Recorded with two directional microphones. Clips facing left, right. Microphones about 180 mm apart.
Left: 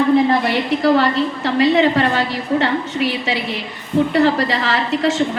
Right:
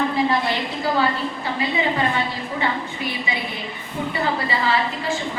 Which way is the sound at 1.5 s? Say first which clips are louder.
Left 9 dB; 75° left (ahead or behind).